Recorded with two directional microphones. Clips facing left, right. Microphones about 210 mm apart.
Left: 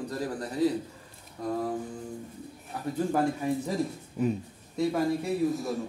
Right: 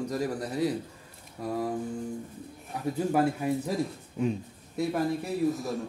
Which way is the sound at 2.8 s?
10° right (ahead or behind).